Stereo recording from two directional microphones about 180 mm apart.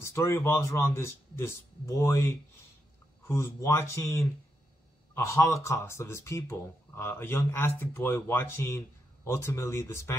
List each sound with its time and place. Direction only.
0.0 s speech: 15° left (ahead or behind)